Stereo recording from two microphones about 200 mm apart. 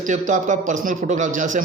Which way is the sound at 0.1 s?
40° right (ahead or behind).